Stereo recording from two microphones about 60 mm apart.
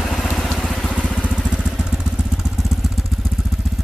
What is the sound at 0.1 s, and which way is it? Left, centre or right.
Vehicle, centre.